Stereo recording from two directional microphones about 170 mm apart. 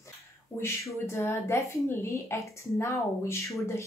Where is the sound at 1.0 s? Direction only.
15° left (ahead or behind).